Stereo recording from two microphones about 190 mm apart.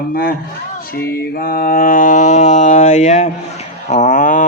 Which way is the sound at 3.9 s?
40° left (ahead or behind).